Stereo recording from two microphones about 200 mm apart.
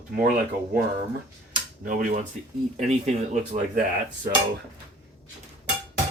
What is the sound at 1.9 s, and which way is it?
Dishes, 40° right (ahead or behind).